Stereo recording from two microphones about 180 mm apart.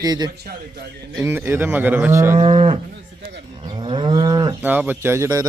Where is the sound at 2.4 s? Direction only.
30° right (ahead or behind).